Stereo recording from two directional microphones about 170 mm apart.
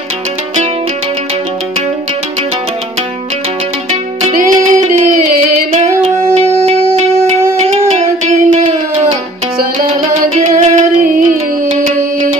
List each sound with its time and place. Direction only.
4.3 s music: 55° right (ahead or behind)
4.9 s a sound: 45° right (ahead or behind)
6.3 s music: 40° right (ahead or behind)
10.3 s music: 50° right (ahead or behind)